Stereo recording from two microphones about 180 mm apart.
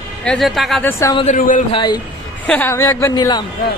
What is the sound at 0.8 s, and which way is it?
Speech, 15° left (ahead or behind).